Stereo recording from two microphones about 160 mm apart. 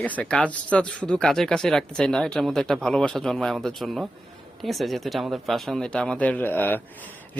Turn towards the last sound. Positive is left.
turn(degrees=10)  # may be behind; listen again after turning